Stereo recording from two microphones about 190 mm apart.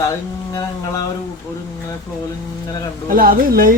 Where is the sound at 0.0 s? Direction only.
20° left (ahead or behind).